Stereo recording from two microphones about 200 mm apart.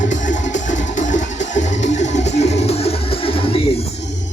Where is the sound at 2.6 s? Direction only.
30° left (ahead or behind).